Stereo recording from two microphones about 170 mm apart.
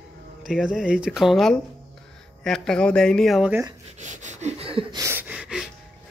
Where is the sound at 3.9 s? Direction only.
45° right (ahead or behind).